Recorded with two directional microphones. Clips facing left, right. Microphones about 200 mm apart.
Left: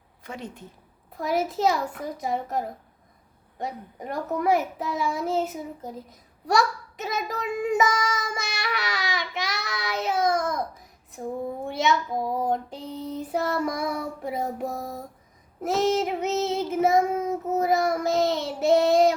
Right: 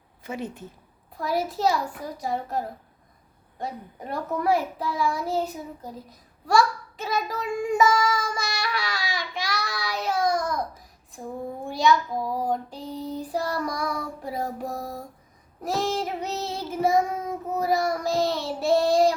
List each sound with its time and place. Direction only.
0.2 s speech: 5° right (ahead or behind)
1.2 s child singing: 20° left (ahead or behind)
11.7 s child singing: 25° left (ahead or behind)